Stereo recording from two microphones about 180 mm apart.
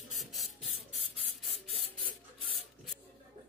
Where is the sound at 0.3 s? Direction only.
Centre (ahead or behind).